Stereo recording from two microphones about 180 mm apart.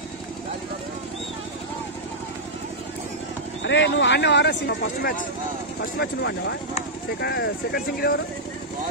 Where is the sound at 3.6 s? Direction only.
80° left; by 8.2 s 60° left (ahead or behind).